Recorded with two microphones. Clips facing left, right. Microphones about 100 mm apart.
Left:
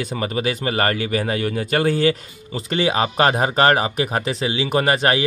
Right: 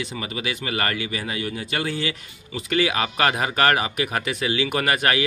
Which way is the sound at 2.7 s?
30° left (ahead or behind).